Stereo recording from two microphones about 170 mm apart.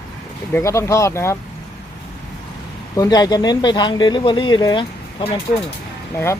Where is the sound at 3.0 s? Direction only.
25° left (ahead or behind).